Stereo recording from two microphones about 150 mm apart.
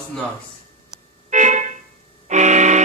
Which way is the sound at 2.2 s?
50° right (ahead or behind).